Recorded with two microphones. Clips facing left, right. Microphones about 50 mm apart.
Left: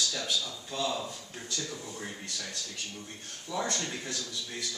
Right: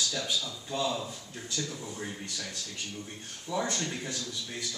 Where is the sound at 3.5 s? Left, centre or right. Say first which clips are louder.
Right 1 dB; centre.